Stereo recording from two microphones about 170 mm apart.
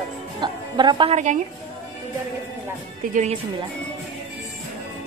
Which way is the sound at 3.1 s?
45° right (ahead or behind).